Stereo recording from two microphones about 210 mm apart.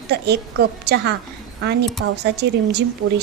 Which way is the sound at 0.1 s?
50° right (ahead or behind).